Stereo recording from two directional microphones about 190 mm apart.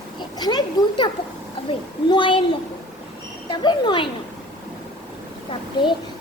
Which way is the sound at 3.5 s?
25° left (ahead or behind).